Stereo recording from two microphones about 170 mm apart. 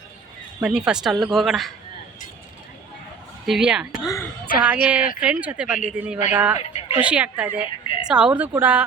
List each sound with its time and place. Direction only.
0.6 s a woman's voice: 5° right (ahead or behind)
3.4 s a woman's voice: centre (ahead or behind)
4.0 s a woman's voice: 20° left (ahead or behind)
4.6 s speech: 10° right (ahead or behind)
6.6 s a sound: 35° left (ahead or behind)
7.0 s speech: 10° right (ahead or behind)